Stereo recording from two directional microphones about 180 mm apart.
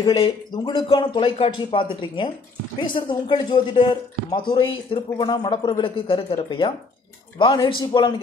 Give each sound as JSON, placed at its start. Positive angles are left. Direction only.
{"t": 0.0, "sound": "speech", "side_deg": 25}